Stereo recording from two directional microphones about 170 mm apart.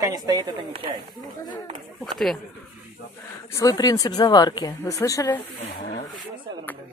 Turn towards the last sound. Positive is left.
turn(degrees=50)  # may be behind; listen again after turning